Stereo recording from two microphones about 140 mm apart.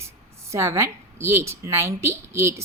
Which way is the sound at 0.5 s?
20° right (ahead or behind).